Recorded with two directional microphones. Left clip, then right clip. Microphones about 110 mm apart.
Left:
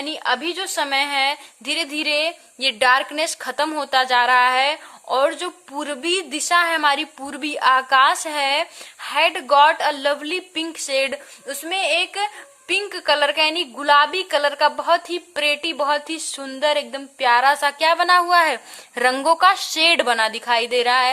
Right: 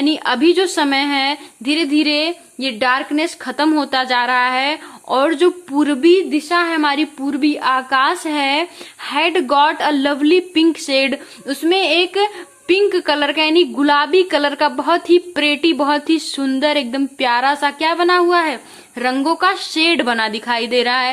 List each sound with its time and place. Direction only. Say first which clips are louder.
0.0 s a woman's voice: right 7 dB; 20° left (ahead or behind)
6.1 s a woman's voice: right 10 dB; 45° left (ahead or behind)
6.5 s a woman's voice: left 1 dB; 55° left (ahead or behind)
6.7 s a woman's voice: right 2 dB; 40° left (ahead or behind)
9.0 s a woman's voice: right 2 dB; 25° left (ahead or behind)